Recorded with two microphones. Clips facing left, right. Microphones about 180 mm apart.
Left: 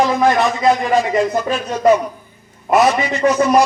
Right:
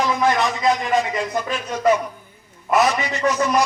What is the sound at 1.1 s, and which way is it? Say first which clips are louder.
A man's voice: left 7 dB; 30° left (ahead or behind).